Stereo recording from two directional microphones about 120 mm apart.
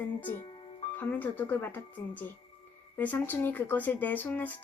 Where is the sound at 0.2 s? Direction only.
15° left (ahead or behind).